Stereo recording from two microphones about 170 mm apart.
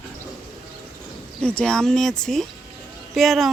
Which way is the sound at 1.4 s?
5° left (ahead or behind).